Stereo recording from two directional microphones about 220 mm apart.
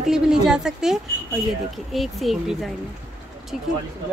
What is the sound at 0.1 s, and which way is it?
A woman's voice, 5° right (ahead or behind).